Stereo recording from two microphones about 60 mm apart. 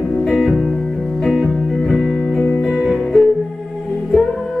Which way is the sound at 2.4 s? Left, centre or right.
Left.